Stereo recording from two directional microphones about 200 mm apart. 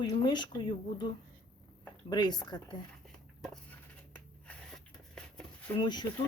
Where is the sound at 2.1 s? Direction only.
20° left (ahead or behind).